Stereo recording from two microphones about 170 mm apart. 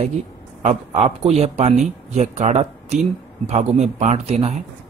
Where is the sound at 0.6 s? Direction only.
35° right (ahead or behind).